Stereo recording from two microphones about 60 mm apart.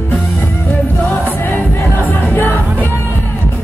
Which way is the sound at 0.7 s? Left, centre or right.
Left.